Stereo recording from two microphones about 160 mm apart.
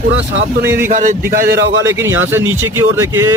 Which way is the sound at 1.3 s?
70° right (ahead or behind).